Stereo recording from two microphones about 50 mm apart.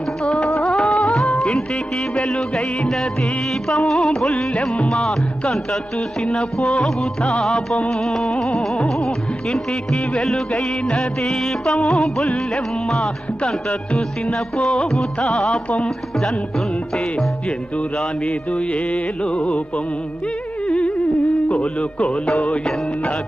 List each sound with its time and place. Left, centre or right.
0.2 s music: centre
0.7 s music: centre
18.7 s music: left
20.7 s humming: left
21.5 s music: left